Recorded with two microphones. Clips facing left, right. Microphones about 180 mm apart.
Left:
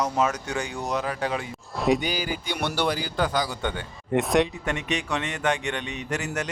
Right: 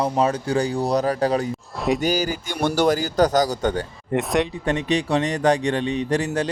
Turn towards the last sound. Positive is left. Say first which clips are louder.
# right 8 dB
turn(degrees=-35)  # may be behind; listen again after turning